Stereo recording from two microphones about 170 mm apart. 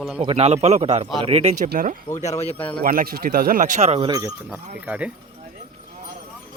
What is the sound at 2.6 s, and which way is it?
Speech, 30° left (ahead or behind).